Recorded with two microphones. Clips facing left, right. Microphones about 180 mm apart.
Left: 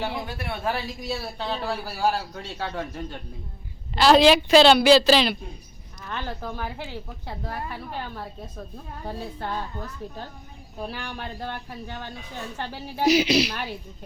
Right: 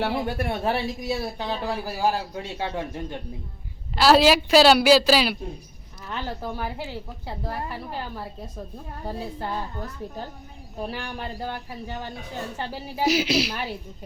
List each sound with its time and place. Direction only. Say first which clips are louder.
0.0 s speech: right 5 dB; 55° right (ahead or behind)
0.6 s a man's voice: right 3 dB; 25° right (ahead or behind)
3.9 s a man's voice: left 1 dB; 5° right (ahead or behind)
10.8 s a man's voice: right 2 dB; 5° right (ahead or behind)